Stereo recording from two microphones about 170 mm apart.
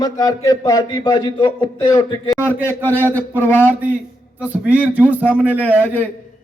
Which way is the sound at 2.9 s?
10° left (ahead or behind).